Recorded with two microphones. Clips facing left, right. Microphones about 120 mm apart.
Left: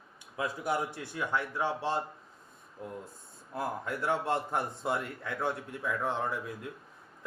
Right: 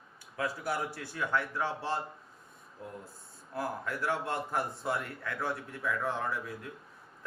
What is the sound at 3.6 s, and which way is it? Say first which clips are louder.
Speech: left 1 dB; 25° left (ahead or behind).